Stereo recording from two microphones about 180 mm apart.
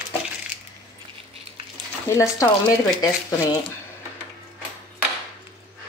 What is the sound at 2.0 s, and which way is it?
Speech, 15° left (ahead or behind).